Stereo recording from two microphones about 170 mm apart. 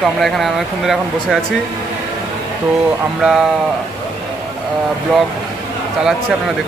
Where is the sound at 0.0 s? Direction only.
Centre (ahead or behind).